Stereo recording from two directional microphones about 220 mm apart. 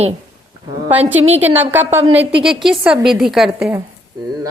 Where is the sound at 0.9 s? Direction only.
30° right (ahead or behind).